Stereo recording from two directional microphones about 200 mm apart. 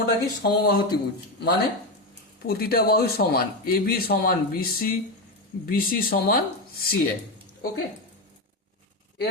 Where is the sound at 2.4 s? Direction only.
50° left (ahead or behind).